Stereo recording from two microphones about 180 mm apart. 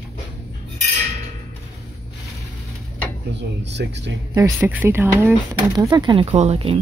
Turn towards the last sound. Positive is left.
turn(degrees=-35)  # may be behind; listen again after turning